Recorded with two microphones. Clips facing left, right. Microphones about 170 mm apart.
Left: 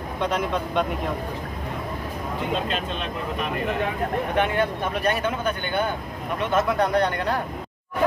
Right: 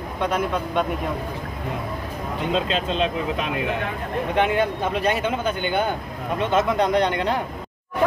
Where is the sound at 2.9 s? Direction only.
90° right.